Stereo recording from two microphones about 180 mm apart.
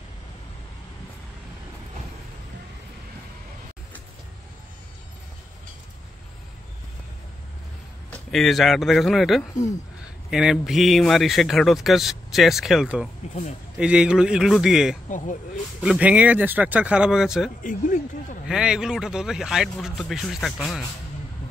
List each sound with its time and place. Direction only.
8.1 s speech: centre (ahead or behind)
13.3 s speech: 40° left (ahead or behind)
13.7 s speech: 5° right (ahead or behind)
15.0 s speech: 45° left (ahead or behind)
15.8 s speech: 5° right (ahead or behind)
17.6 s speech: 45° left (ahead or behind)
18.5 s speech: 5° right (ahead or behind)